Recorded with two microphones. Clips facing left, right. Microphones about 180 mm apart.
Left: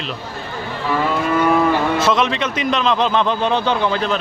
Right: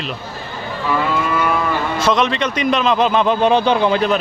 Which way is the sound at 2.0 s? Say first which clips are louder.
Right 1 dB; centre (ahead or behind).